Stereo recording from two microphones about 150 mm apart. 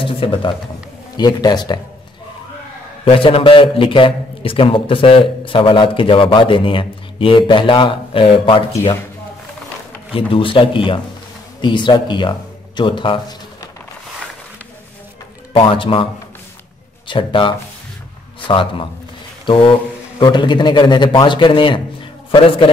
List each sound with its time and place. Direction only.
0.0 s a man's voice: 35° left (ahead or behind)
3.1 s a man's voice: 40° left (ahead or behind)
10.1 s a man's voice: 35° left (ahead or behind)
15.5 s a man's voice: 35° left (ahead or behind)
17.1 s a man's voice: 35° left (ahead or behind)